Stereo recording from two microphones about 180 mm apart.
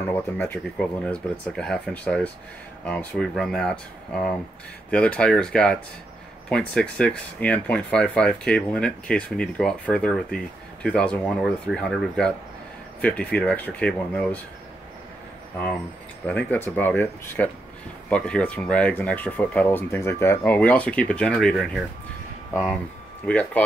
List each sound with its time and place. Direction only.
0.0 s speech: 10° left (ahead or behind)
4.9 s speech: 5° left (ahead or behind)
16.3 s speech: 10° left (ahead or behind)
23.2 s speech: 5° left (ahead or behind)